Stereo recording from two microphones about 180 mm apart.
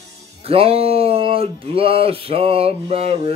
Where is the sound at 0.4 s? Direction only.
30° right (ahead or behind).